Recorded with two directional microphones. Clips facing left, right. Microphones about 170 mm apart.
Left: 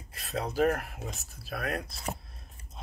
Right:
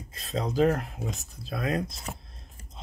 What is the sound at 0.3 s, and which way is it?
Speech, 20° right (ahead or behind).